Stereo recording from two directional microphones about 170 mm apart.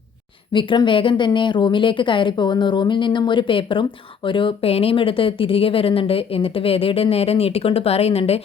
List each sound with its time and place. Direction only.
0.5 s speech: 30° left (ahead or behind)